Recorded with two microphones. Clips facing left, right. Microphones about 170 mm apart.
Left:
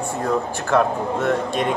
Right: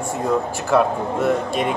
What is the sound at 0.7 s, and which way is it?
Speech, 5° right (ahead or behind).